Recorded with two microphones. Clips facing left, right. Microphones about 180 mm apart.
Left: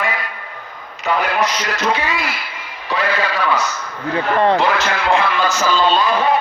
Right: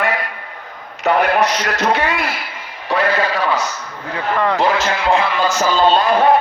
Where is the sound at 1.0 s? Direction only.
60° right (ahead or behind).